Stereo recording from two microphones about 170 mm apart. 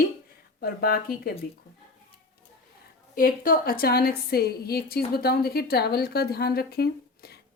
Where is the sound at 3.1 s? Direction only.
55° left (ahead or behind).